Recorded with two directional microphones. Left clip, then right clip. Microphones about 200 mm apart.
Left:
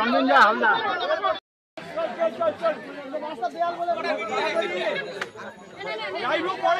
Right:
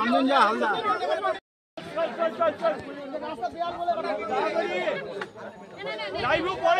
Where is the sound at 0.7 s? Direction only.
70° right (ahead or behind).